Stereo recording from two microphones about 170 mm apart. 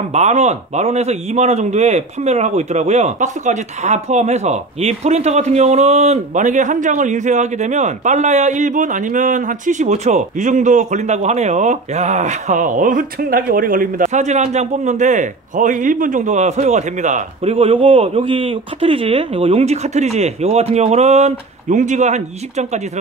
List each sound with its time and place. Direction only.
0.1 s a man's voice: 40° right (ahead or behind)